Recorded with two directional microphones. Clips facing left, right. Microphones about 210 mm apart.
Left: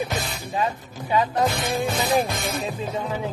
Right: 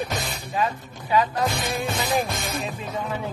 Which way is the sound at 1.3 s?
25° left (ahead or behind).